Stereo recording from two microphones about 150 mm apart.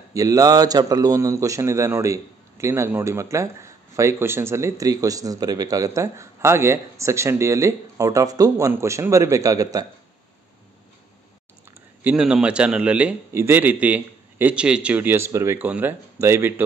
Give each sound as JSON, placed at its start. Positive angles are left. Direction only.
{"t": 0.1, "sound": "a man's voice", "side_deg": -25}
{"t": 12.0, "sound": "a man's voice", "side_deg": -10}